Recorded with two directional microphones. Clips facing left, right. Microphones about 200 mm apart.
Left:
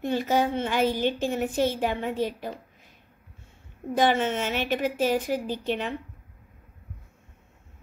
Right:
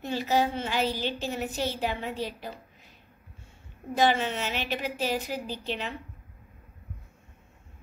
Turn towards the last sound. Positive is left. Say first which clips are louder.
# left 5 dB
turn(degrees=50)  # may be behind; listen again after turning